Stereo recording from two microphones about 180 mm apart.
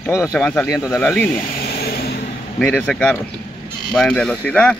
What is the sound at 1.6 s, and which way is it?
Vehicle, 60° left (ahead or behind).